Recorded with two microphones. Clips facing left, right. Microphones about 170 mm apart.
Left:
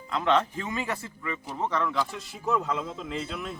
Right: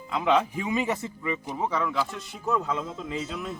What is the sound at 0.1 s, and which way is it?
Speech, 5° right (ahead or behind).